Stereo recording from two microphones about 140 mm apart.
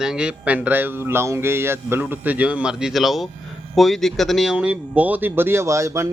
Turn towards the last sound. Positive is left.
turn(degrees=-20)  # may be behind; listen again after turning